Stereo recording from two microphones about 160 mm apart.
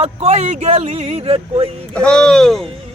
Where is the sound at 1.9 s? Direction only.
5° left (ahead or behind).